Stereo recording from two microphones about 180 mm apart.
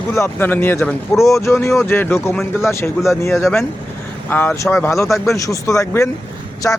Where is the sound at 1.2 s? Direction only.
15° left (ahead or behind).